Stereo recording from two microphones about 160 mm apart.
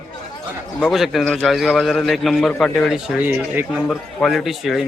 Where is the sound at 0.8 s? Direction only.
Centre (ahead or behind).